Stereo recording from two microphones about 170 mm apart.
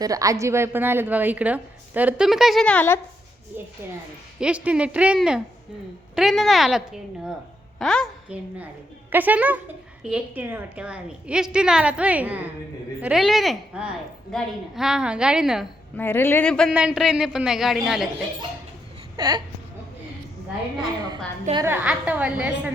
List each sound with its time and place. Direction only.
0.0 s a woman's voice: 20° right (ahead or behind); by 3.0 s 10° left (ahead or behind)
4.4 s a woman's voice: 5° right (ahead or behind)
8.3 s a woman's voice: 10° right (ahead or behind)
16.0 s a man's voice: 15° left (ahead or behind); by 18.1 s centre (ahead or behind)
19.1 s speech: 25° right (ahead or behind)
21.5 s a woman's voice: 15° right (ahead or behind)